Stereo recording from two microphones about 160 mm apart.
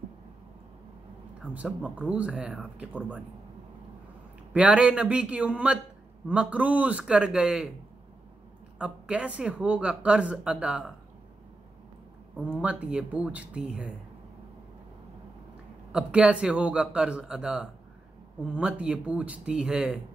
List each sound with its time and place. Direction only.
1.4 s speech: 10° right (ahead or behind)
4.6 s speech: 5° right (ahead or behind)
8.7 s speech: 5° right (ahead or behind)
12.4 s speech: 5° right (ahead or behind)
15.9 s speech: 5° right (ahead or behind)